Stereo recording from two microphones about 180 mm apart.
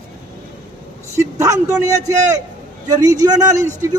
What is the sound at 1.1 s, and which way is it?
A man's voice, 20° right (ahead or behind).